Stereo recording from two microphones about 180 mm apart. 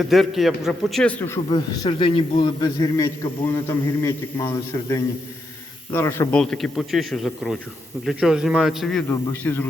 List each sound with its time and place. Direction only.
0.0 s a man's voice: centre (ahead or behind)
1.5 s a man's voice: 25° left (ahead or behind)